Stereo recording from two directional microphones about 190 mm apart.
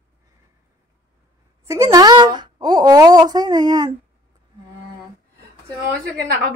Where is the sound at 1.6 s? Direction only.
15° right (ahead or behind).